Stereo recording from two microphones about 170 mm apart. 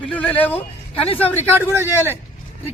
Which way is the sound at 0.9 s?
35° left (ahead or behind).